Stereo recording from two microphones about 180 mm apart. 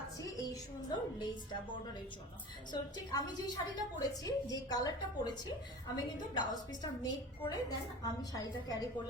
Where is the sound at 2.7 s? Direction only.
20° left (ahead or behind).